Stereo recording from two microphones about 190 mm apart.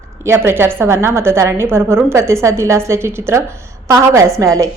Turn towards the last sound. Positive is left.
turn(degrees=-15)  # may be behind; listen again after turning